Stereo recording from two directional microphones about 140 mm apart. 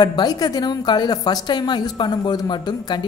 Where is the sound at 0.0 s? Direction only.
30° left (ahead or behind).